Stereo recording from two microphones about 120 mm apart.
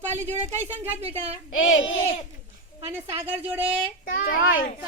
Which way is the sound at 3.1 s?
15° right (ahead or behind).